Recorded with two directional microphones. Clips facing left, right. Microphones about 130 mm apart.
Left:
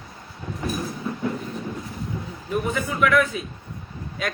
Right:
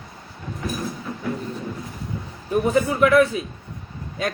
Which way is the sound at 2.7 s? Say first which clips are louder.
Right 5 dB; 30° right (ahead or behind).